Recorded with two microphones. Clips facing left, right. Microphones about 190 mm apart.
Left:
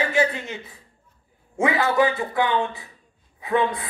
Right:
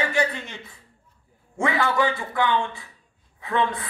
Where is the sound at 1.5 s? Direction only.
20° left (ahead or behind).